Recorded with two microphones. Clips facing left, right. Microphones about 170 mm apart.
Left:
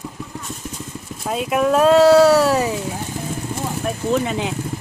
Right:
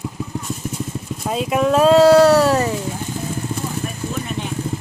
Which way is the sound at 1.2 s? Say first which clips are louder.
Even; centre (ahead or behind).